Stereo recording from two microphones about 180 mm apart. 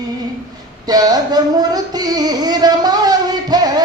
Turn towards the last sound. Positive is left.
turn(degrees=-20)  # may be behind; listen again after turning